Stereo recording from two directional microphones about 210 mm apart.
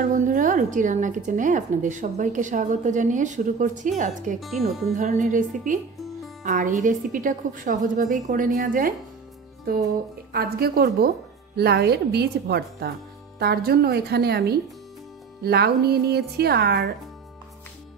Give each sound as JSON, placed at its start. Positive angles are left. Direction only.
{"t": 0.0, "sound": "a woman's voice", "side_deg": -40}
{"t": 4.4, "sound": "speech", "side_deg": 0}
{"t": 4.9, "sound": "a woman's voice", "side_deg": -40}
{"t": 10.3, "sound": "a woman's voice", "side_deg": -45}